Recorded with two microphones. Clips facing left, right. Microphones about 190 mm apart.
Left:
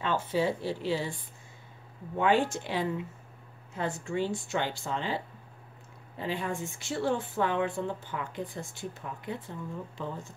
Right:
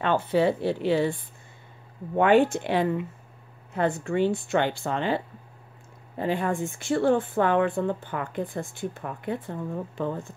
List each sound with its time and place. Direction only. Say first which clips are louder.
0.0 s speech: right 6 dB; 60° right (ahead or behind)
2.1 s speech: right 7 dB; 60° right (ahead or behind)